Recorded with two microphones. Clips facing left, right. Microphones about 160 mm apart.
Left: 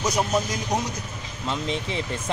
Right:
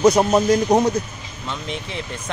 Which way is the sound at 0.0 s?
60° right (ahead or behind).